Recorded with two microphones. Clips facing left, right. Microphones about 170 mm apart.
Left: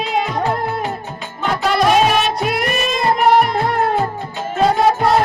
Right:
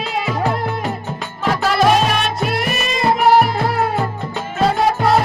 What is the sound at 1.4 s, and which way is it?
Music, centre (ahead or behind).